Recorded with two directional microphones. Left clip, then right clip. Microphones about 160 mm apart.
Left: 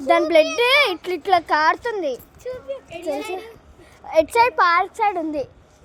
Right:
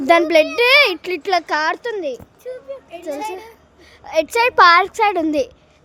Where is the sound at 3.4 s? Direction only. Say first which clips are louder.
Left 1 dB; 20° right (ahead or behind).